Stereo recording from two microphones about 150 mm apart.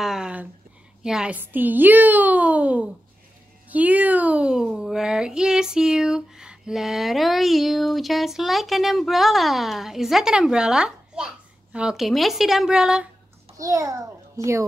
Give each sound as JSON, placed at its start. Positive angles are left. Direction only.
{"t": 0.0, "sound": "a sound", "side_deg": -5}
{"t": 1.0, "sound": "a woman's voice", "side_deg": -5}
{"t": 13.6, "sound": "a child's voice", "side_deg": -20}